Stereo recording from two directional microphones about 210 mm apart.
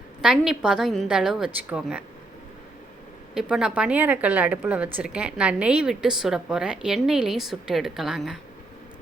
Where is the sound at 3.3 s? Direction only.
5° right (ahead or behind).